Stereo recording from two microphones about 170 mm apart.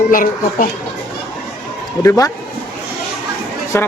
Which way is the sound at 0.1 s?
55° left (ahead or behind).